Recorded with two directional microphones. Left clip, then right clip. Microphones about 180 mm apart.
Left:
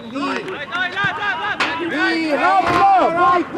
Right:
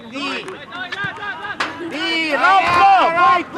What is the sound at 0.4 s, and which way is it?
Speech, centre (ahead or behind).